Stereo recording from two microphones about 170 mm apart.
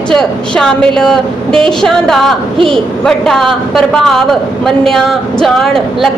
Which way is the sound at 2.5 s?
30° right (ahead or behind).